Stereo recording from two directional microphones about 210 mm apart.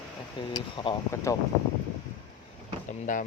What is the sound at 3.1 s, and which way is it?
Speech, 35° left (ahead or behind).